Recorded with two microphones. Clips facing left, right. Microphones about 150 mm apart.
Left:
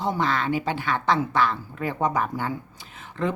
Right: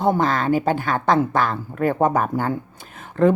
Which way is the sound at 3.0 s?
50° right (ahead or behind).